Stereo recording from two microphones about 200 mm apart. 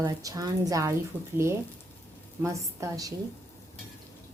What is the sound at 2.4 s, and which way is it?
Speech, 15° right (ahead or behind).